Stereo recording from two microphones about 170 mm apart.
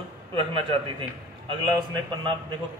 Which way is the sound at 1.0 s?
25° right (ahead or behind).